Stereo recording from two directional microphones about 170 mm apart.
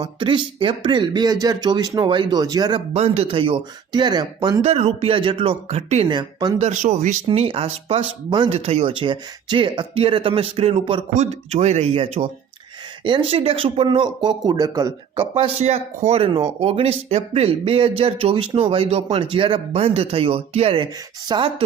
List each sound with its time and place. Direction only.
0.0 s speech: 30° right (ahead or behind)
2.9 s speech: 40° right (ahead or behind)
6.1 s speech: 25° right (ahead or behind)
6.7 s speech: 45° right (ahead or behind)
7.3 s speech: 30° right (ahead or behind)